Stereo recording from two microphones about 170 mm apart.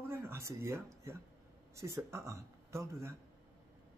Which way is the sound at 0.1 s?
15° right (ahead or behind).